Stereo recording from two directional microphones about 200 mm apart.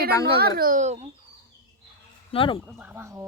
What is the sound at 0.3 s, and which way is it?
Speech, 50° right (ahead or behind).